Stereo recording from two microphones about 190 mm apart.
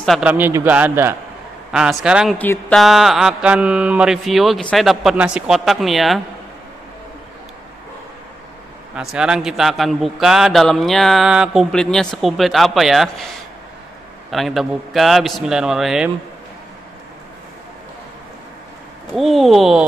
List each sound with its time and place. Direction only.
0.0 s a man's voice: 5° right (ahead or behind)
2.3 s a man's voice: 10° left (ahead or behind)
8.9 s a man's voice: 5° right (ahead or behind)
14.3 s a man's voice: centre (ahead or behind)
19.1 s a man's voice: centre (ahead or behind)